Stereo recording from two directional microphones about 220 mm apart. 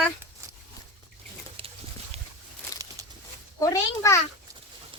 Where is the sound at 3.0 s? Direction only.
15° right (ahead or behind).